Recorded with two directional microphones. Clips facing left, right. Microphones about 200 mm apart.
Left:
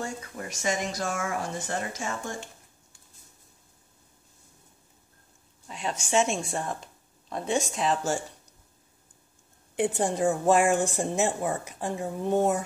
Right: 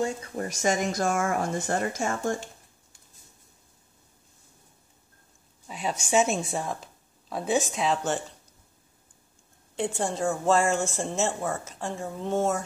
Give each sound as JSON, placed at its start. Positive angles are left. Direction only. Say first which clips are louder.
{"t": 0.4, "sound": "speech", "louder": "right 4 dB", "side_deg": -45}
{"t": 5.7, "sound": "speech", "louder": "right 2 dB", "side_deg": -10}
{"t": 9.8, "sound": "a woman's voice", "louder": "left 3 dB", "side_deg": 20}